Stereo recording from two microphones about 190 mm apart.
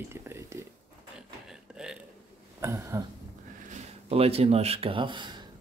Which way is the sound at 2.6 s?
15° right (ahead or behind).